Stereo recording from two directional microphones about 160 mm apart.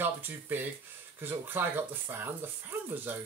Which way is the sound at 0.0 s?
10° right (ahead or behind).